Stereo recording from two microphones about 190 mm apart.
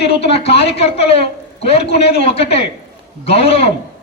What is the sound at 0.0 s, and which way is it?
Speech, 30° left (ahead or behind).